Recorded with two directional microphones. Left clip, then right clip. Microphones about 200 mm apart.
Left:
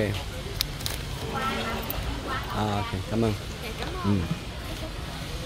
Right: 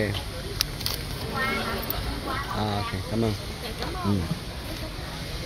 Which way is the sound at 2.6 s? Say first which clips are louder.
Even; 20° left (ahead or behind).